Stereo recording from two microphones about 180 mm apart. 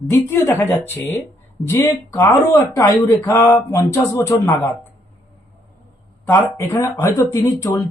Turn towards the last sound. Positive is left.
turn(degrees=15)  # may be behind; listen again after turning